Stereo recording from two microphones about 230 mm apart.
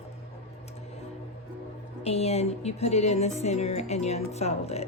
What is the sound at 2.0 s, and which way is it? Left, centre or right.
Speech, left.